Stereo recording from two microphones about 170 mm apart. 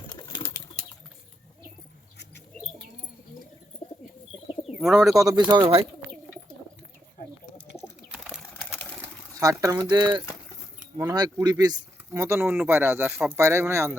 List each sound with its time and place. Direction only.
0.1 s a sound: 25° left (ahead or behind)
4.8 s speech: centre (ahead or behind)
5.1 s speech: 20° right (ahead or behind)
7.8 s bird: 5° right (ahead or behind)
9.4 s speech: 20° right (ahead or behind)